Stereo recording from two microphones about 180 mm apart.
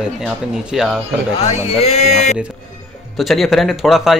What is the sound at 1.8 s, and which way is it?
Speech, 35° left (ahead or behind).